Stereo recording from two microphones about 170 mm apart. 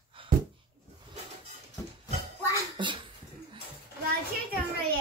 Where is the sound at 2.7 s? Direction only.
30° right (ahead or behind).